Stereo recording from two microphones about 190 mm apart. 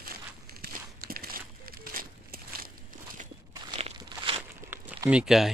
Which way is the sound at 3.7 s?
30° right (ahead or behind).